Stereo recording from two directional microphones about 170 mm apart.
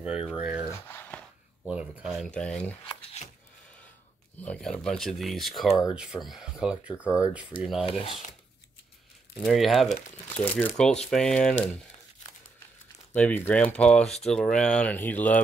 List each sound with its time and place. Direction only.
0.0 s speech: 5° right (ahead or behind)
0.7 s a sound: 15° left (ahead or behind)
1.7 s speech: 5° right (ahead or behind)
4.4 s speech: 5° left (ahead or behind)
7.1 s speech: 20° left (ahead or behind)
7.8 s speech: 35° left (ahead or behind)
9.3 s speech: centre (ahead or behind)
10.3 s speech: 10° left (ahead or behind)
13.1 s speech: 10° left (ahead or behind)